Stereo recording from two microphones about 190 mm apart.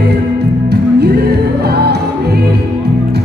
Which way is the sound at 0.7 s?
60° right (ahead or behind).